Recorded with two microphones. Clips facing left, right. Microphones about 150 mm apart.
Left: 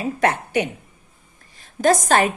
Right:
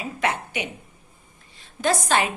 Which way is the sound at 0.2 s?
45° left (ahead or behind).